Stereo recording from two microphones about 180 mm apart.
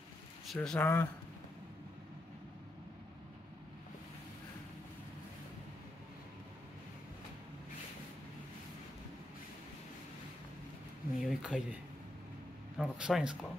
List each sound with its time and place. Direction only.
0.5 s speech: 5° left (ahead or behind)
11.2 s speech: 5° right (ahead or behind)